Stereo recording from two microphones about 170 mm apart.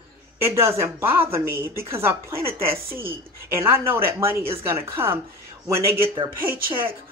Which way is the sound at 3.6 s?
15° right (ahead or behind).